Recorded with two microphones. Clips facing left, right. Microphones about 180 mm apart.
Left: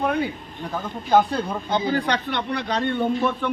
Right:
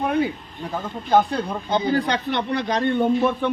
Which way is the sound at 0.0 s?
15° right (ahead or behind).